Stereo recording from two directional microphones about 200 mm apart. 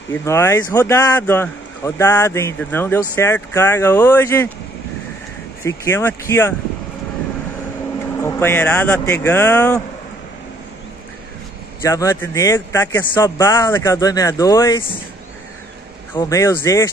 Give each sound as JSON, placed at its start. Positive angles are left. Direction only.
{"t": 0.1, "sound": "speech", "side_deg": 15}
{"t": 5.6, "sound": "speech", "side_deg": 15}
{"t": 8.2, "sound": "speech", "side_deg": 10}
{"t": 11.8, "sound": "speech", "side_deg": 15}
{"t": 16.2, "sound": "speech", "side_deg": 15}